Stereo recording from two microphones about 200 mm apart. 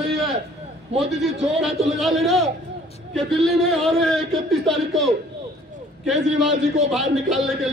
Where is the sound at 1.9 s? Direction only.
Centre (ahead or behind).